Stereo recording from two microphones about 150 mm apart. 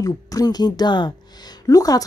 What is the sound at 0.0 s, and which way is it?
Speech, 25° left (ahead or behind).